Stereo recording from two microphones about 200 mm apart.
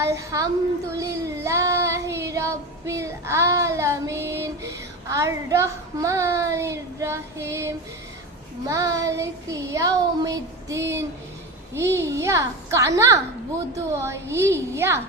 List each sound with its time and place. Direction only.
0.0 s a child's voice: 15° right (ahead or behind)
0.9 s child singing: 15° right (ahead or behind)
5.0 s a child's voice: 15° right (ahead or behind)